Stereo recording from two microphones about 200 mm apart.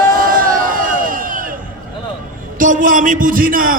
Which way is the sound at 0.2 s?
45° right (ahead or behind).